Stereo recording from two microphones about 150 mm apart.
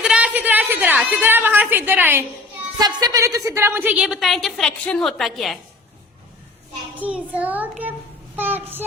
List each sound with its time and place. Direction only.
0.0 s a woman's voice: 5° right (ahead or behind)
2.7 s a woman's voice: 25° right (ahead or behind); by 5.5 s centre (ahead or behind)
6.9 s child singing: 10° right (ahead or behind)